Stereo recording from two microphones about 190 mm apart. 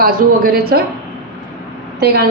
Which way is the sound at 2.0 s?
55° right (ahead or behind).